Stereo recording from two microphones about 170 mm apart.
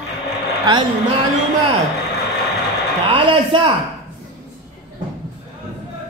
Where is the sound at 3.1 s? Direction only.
30° right (ahead or behind).